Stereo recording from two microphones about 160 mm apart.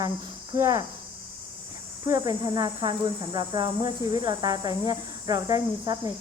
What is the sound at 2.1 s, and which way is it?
Speech, 20° right (ahead or behind).